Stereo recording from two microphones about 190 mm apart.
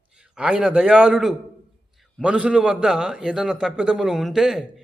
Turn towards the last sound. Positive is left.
turn(degrees=0)  # may be behind; listen again after turning